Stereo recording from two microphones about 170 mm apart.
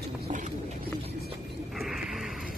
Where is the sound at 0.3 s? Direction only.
45° right (ahead or behind).